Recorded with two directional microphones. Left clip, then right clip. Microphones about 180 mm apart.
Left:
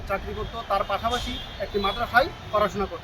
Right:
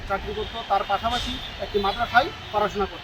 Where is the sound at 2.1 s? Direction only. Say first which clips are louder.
Left 1 dB; 30° left (ahead or behind).